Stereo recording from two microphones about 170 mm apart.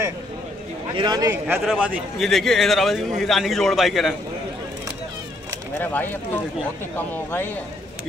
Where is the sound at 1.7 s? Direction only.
10° right (ahead or behind).